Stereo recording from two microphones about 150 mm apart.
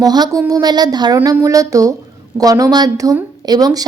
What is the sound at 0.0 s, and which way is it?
Speech, 25° right (ahead or behind).